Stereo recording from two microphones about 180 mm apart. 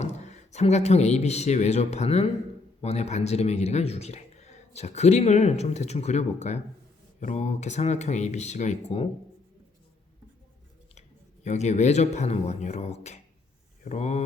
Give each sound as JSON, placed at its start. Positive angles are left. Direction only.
{"t": 0.0, "sound": "a man's voice", "side_deg": 40}
{"t": 11.4, "sound": "a man's voice", "side_deg": 40}